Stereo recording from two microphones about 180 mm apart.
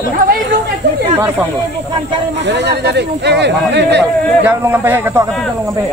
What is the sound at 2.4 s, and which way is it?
Speech, 75° right (ahead or behind).